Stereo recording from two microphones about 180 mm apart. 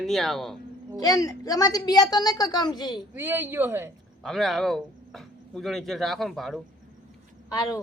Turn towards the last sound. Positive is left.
turn(degrees=20)  # may be behind; listen again after turning